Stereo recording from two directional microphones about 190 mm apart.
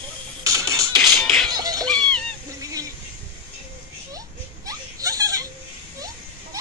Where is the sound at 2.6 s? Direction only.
20° right (ahead or behind).